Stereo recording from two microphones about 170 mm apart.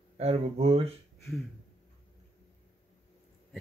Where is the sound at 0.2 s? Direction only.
35° right (ahead or behind).